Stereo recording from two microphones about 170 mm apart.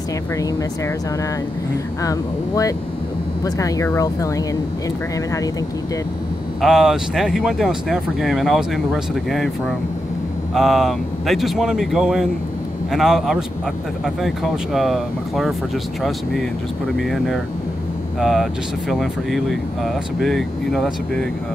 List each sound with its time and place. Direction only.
2.0 s speech: 20° left (ahead or behind)
6.6 s speech: 5° right (ahead or behind)
10.5 s speech: centre (ahead or behind)